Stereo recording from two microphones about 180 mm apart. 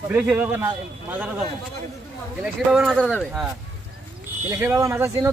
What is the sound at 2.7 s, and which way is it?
Speech, centre (ahead or behind).